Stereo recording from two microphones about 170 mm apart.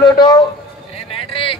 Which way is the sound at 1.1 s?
30° left (ahead or behind).